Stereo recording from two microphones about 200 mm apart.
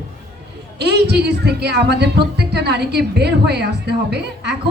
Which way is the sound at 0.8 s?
55° right (ahead or behind).